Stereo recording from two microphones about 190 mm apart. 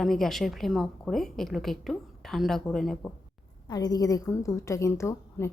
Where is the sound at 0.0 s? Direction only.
Centre (ahead or behind).